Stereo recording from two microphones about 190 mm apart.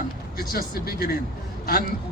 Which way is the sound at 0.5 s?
50° left (ahead or behind).